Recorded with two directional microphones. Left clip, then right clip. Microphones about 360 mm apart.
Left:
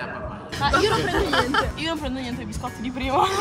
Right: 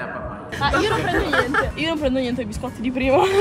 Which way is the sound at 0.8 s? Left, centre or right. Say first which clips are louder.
Right 1 dB; left.